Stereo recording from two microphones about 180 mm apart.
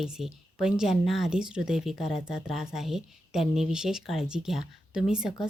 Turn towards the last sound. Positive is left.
turn(degrees=-5)  # may be behind; listen again after turning